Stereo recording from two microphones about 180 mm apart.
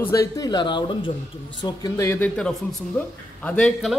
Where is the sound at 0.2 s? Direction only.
20° left (ahead or behind).